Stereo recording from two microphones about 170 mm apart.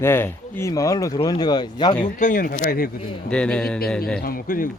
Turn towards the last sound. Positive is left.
turn(degrees=55)  # may be behind; listen again after turning